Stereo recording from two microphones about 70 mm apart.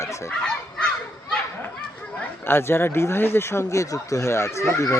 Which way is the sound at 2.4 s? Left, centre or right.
Left.